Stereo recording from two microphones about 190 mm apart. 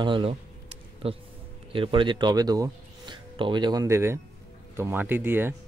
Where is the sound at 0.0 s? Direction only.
25° right (ahead or behind); by 5.5 s 10° right (ahead or behind).